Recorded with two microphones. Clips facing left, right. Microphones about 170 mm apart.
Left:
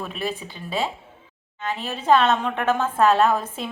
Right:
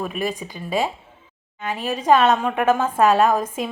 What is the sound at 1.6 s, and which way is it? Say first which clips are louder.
A woman's voice: right 2 dB; 10° right (ahead or behind).